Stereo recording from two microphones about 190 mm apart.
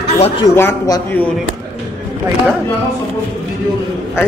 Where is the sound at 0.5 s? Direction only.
15° left (ahead or behind).